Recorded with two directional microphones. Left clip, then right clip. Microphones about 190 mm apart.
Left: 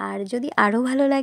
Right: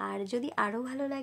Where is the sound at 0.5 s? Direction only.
40° left (ahead or behind).